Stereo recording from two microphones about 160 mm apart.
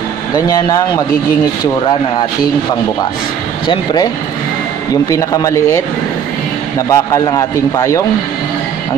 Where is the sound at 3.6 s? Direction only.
25° left (ahead or behind).